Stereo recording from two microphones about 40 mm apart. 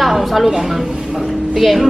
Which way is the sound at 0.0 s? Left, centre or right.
Centre.